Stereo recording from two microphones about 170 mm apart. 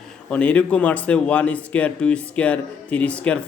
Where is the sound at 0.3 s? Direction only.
10° left (ahead or behind).